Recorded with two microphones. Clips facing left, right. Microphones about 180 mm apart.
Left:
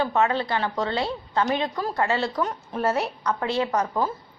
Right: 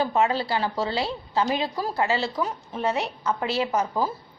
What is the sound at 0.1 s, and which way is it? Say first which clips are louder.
A woman's voice: even; 30° right (ahead or behind).